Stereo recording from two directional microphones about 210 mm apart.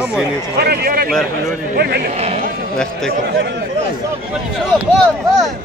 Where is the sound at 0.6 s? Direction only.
50° right (ahead or behind).